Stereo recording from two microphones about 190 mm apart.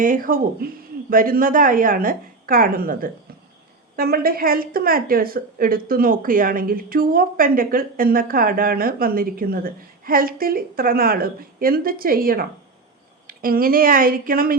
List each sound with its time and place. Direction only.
0.0 s a woman's voice: 45° right (ahead or behind)